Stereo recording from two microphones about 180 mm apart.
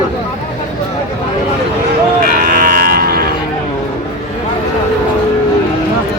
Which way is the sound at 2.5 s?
55° right (ahead or behind).